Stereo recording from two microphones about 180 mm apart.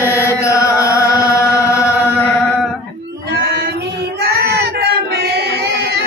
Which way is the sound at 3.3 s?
65° right (ahead or behind).